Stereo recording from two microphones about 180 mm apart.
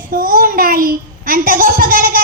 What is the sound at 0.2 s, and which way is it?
A child's voice, 50° right (ahead or behind).